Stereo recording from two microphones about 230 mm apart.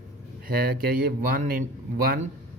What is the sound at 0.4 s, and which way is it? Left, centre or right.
Speech, right.